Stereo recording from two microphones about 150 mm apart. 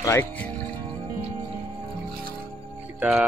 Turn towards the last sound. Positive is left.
turn(degrees=-5)  # may be behind; listen again after turning